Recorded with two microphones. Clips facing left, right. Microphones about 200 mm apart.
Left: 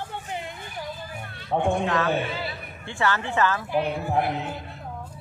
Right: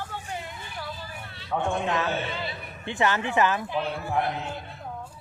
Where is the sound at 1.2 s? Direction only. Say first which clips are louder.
Left 3 dB; 50° left (ahead or behind).